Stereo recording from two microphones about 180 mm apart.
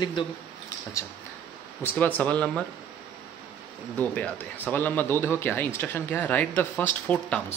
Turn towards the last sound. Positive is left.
turn(degrees=10)  # may be behind; listen again after turning